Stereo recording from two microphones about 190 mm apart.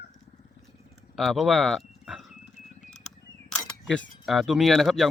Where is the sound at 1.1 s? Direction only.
Centre (ahead or behind).